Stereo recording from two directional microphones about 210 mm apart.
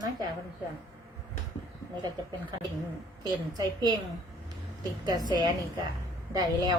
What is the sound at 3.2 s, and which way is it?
Speech, 20° right (ahead or behind).